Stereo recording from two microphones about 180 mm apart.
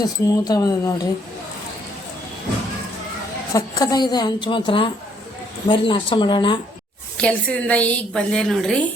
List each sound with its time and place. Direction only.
0.0 s a woman's voice: 20° left (ahead or behind)
3.5 s a woman's voice: 20° left (ahead or behind)
7.2 s a woman's voice: 5° left (ahead or behind)